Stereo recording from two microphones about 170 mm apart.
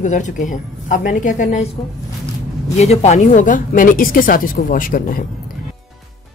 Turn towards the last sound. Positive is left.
turn(degrees=55)  # may be behind; listen again after turning